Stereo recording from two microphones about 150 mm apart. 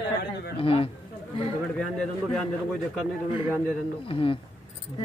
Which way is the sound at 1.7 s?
5° left (ahead or behind).